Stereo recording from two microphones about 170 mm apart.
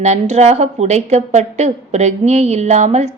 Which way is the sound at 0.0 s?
40° right (ahead or behind).